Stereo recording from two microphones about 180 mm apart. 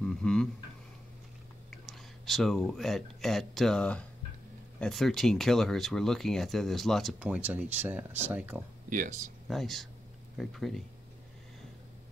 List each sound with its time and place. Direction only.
0.0 s a sound: 5° left (ahead or behind)
1.7 s speech: centre (ahead or behind)
8.9 s speech: 45° right (ahead or behind)
9.5 s speech: centre (ahead or behind)